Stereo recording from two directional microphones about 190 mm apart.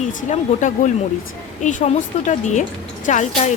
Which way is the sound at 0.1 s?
40° left (ahead or behind).